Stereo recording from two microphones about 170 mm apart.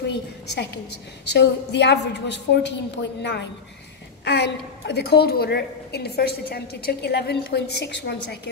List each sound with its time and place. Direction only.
1.2 s a woman's voice: 90° left
4.2 s a woman's voice: 80° left